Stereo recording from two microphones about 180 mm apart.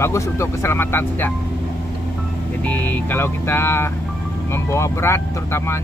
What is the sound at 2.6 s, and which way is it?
Speech, 10° left (ahead or behind).